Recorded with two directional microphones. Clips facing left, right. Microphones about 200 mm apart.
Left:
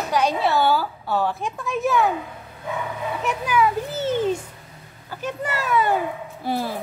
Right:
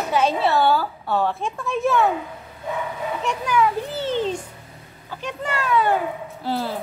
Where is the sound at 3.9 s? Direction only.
50° left (ahead or behind).